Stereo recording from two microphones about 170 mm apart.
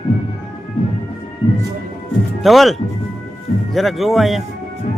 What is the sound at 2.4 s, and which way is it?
Speech, centre (ahead or behind).